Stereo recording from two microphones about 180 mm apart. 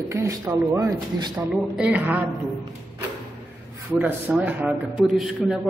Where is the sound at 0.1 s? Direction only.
15° right (ahead or behind).